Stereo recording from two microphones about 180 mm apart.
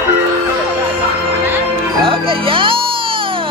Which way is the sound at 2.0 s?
30° right (ahead or behind).